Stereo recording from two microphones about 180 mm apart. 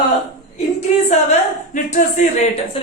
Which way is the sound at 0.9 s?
40° left (ahead or behind).